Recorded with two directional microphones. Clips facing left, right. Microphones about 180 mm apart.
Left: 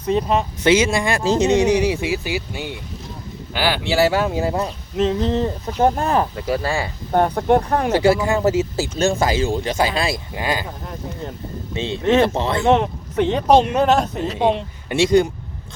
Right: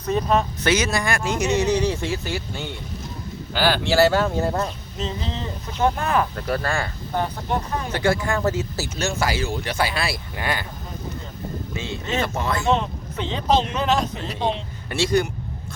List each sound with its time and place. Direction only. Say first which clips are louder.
0.0 s speech: left 2 dB; 25° left (ahead or behind)
1.5 s speech: left 2 dB; 15° left (ahead or behind)
4.9 s speech: left 11 dB; 70° left (ahead or behind)
5.8 s speech: left 3 dB; 35° left (ahead or behind)
6.3 s speech: left 3 dB; 5° left (ahead or behind)
6.7 s speech: left 3 dB; 15° left (ahead or behind)
7.1 s speech: left 10 dB; 55° left (ahead or behind)
8.3 s speech: left 5 dB; 20° left (ahead or behind)
9.0 s speech: left 6 dB; 30° left (ahead or behind)
11.7 s speech: left 11 dB; 30° left (ahead or behind)
12.6 s speech: left 8 dB; 60° left (ahead or behind)
14.2 s speech: left 6 dB; 15° left (ahead or behind)